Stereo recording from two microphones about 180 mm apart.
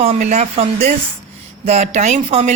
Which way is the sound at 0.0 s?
35° right (ahead or behind).